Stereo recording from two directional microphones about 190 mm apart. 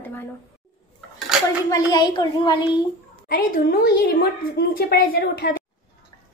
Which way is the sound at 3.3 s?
55° left (ahead or behind).